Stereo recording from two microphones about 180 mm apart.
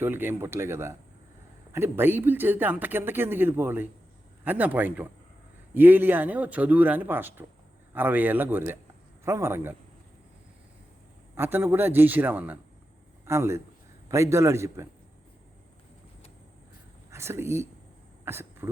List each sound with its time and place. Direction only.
0.0 s speech: 10° right (ahead or behind)
11.3 s speech: 10° right (ahead or behind)
17.1 s speech: 15° right (ahead or behind)